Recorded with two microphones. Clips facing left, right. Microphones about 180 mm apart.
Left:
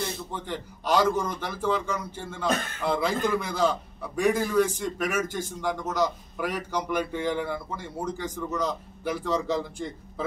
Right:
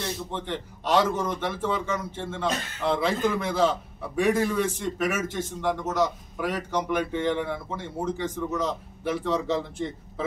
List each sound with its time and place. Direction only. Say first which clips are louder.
0.3 s a man's voice: right 2 dB; centre (ahead or behind)
2.5 s speech: left 3 dB; 50° left (ahead or behind)
2.8 s a man's voice: right 4 dB; centre (ahead or behind)